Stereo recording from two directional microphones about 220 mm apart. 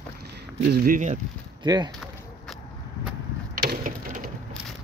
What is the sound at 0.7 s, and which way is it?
Speech, 35° right (ahead or behind).